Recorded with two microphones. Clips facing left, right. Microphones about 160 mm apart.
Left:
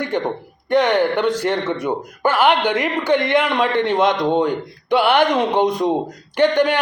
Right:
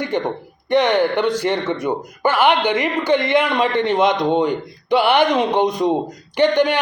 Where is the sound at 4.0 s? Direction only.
10° right (ahead or behind).